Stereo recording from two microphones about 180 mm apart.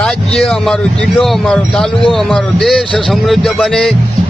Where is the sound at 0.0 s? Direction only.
5° left (ahead or behind).